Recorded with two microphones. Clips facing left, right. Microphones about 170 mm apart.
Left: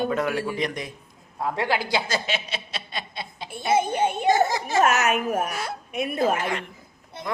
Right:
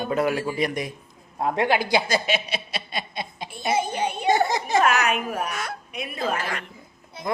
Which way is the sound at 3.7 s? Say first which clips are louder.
Left 3 dB; 50° left (ahead or behind).